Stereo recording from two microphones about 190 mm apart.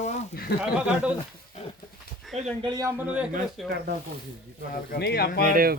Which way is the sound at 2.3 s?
35° right (ahead or behind).